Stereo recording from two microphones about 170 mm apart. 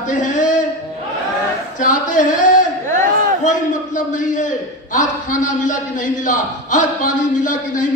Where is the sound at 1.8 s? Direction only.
50° left (ahead or behind).